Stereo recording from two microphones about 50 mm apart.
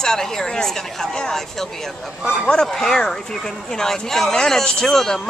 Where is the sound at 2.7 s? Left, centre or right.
Centre.